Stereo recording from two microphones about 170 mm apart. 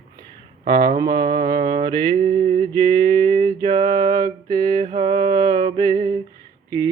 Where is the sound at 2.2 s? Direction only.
55° right (ahead or behind).